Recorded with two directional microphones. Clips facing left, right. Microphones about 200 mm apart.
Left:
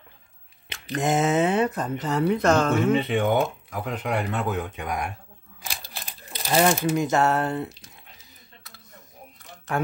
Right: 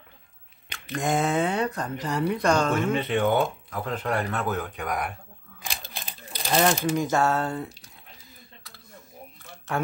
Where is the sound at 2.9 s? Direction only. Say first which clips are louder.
Left 2 dB; 15° left (ahead or behind).